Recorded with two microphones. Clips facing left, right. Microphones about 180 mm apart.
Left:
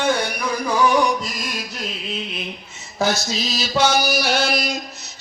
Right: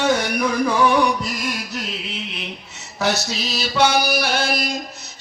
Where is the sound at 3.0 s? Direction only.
70° right (ahead or behind); by 4.8 s 50° right (ahead or behind).